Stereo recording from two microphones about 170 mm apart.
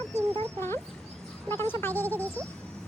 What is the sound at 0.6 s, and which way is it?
Speech, 15° left (ahead or behind).